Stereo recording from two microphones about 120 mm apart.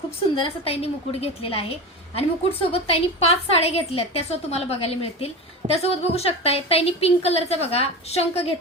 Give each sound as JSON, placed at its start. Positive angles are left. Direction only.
{"t": 0.3, "sound": "a woman's voice", "side_deg": 55}